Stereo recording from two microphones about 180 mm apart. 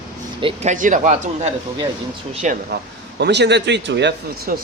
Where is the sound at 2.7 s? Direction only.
70° right (ahead or behind).